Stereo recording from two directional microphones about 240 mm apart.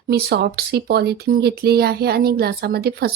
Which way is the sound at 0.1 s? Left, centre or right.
Right.